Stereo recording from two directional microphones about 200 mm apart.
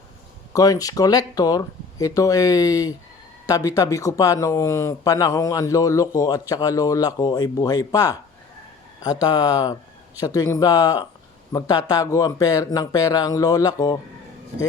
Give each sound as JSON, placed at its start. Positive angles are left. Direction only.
{"t": 0.5, "sound": "speech", "side_deg": 15}
{"t": 9.2, "sound": "speech", "side_deg": 20}